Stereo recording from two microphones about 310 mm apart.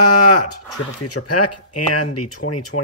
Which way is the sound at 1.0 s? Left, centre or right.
Left.